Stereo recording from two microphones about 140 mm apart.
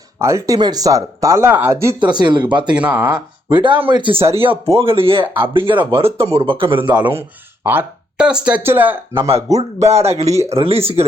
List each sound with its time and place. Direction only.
0.2 s speech: 20° right (ahead or behind)
2.0 s speech: 35° right (ahead or behind)
2.7 s speech: 10° right (ahead or behind)
3.9 s speech: 35° right (ahead or behind)
5.7 s speech: 10° right (ahead or behind)
6.0 s speech: 45° right (ahead or behind)
7.0 s speech: 15° right (ahead or behind)
9.8 s speech: 50° right (ahead or behind)
10.3 s speech: 20° right (ahead or behind)
10.6 s speech: 45° right (ahead or behind)